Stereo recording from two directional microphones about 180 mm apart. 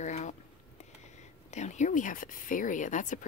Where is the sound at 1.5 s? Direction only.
40° left (ahead or behind).